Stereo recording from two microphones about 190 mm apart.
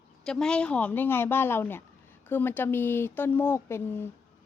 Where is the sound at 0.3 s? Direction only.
5° left (ahead or behind).